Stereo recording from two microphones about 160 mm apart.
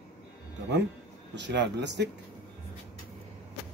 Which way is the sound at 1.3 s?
90° right.